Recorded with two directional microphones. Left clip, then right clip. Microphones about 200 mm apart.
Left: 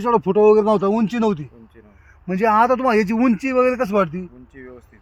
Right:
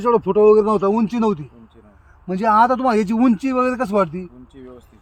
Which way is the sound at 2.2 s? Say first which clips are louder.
Right 1 dB; 30° left (ahead or behind).